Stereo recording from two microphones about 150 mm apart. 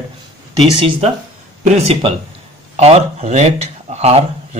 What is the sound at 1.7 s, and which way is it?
Speech, 45° right (ahead or behind).